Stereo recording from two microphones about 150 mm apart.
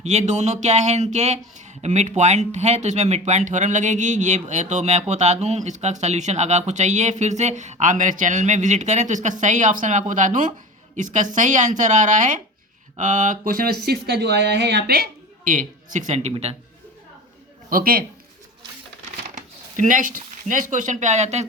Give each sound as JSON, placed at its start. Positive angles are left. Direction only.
{"t": 0.0, "sound": "speech", "side_deg": -50}
{"t": 13.8, "sound": "a man's voice", "side_deg": -90}
{"t": 17.7, "sound": "a man's voice", "side_deg": -75}
{"t": 19.7, "sound": "speech", "side_deg": -55}